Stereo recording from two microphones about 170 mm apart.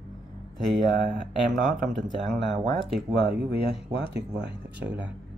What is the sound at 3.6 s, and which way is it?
Speech, 75° right (ahead or behind).